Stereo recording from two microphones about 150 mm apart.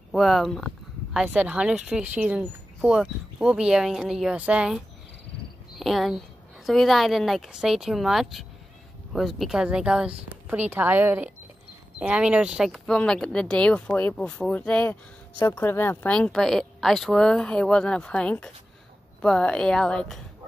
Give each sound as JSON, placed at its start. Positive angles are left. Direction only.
{"t": 0.1, "sound": "speech", "side_deg": 0}